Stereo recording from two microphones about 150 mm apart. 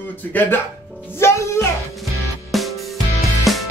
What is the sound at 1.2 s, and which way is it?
Music, 15° left (ahead or behind).